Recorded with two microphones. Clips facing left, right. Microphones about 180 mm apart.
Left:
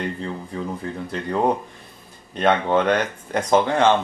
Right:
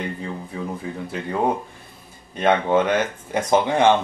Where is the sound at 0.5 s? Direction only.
5° right (ahead or behind).